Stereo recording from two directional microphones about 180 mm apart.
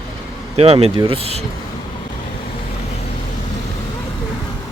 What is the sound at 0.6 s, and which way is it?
Speech, 30° right (ahead or behind).